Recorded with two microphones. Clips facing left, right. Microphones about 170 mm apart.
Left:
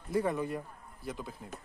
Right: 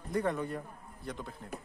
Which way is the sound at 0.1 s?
5° left (ahead or behind).